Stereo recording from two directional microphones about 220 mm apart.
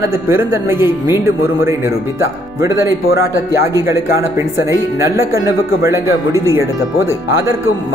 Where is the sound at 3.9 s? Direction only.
15° right (ahead or behind).